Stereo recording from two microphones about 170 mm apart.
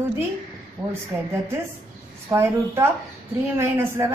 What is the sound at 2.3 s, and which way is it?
A woman's voice, 15° right (ahead or behind).